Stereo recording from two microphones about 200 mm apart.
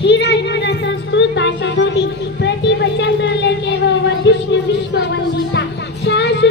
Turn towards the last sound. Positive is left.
turn(degrees=60)  # may be behind; listen again after turning